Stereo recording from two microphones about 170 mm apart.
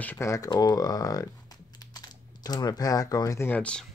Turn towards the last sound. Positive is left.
turn(degrees=10)  # may be behind; listen again after turning